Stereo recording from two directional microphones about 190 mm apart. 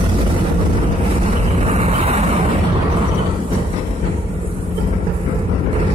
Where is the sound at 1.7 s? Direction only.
35° right (ahead or behind).